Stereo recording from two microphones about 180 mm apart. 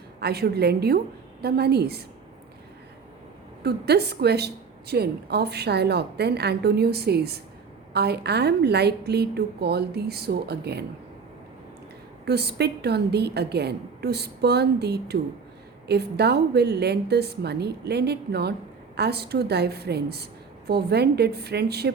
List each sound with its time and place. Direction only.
0.2 s a woman's voice: 65° right (ahead or behind)
3.6 s a woman's voice: 65° right (ahead or behind)
12.2 s a woman's voice: 65° right (ahead or behind)